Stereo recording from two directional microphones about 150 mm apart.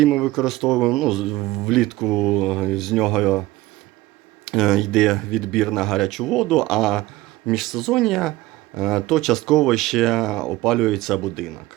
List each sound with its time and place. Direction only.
0.0 s speech: centre (ahead or behind)
4.4 s speech: centre (ahead or behind)